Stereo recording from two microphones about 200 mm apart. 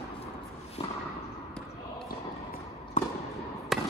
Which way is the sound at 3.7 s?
Centre (ahead or behind).